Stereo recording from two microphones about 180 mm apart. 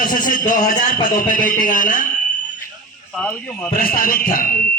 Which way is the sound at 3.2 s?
10° left (ahead or behind).